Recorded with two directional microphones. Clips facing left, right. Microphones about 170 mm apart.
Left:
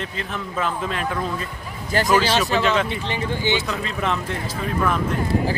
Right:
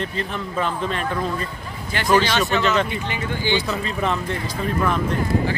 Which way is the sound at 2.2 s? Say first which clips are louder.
Left 1 dB; 35° left (ahead or behind).